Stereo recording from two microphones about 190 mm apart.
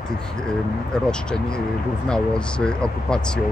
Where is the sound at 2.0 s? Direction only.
5° left (ahead or behind).